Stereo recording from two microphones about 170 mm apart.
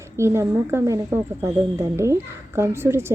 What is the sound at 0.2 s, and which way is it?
Speech, 15° right (ahead or behind).